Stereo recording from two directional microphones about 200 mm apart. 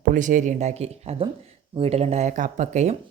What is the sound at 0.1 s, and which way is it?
Speech, 40° right (ahead or behind).